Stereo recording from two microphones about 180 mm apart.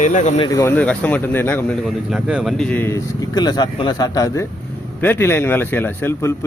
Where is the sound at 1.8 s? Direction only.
5° right (ahead or behind).